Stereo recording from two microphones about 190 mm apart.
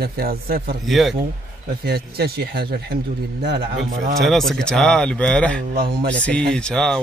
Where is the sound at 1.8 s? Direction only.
55° right (ahead or behind).